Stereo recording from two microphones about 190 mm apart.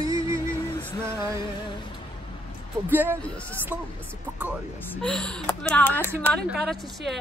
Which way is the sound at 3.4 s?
10° right (ahead or behind).